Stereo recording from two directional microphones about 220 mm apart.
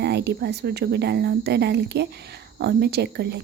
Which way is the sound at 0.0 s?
50° right (ahead or behind).